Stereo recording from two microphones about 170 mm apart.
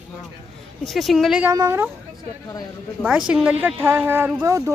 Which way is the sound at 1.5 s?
15° right (ahead or behind).